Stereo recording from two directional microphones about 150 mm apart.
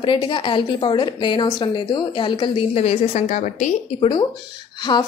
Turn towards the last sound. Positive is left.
turn(degrees=30)  # may be behind; listen again after turning